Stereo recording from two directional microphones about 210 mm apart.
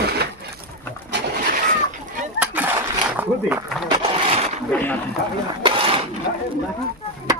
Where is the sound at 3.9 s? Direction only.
25° right (ahead or behind).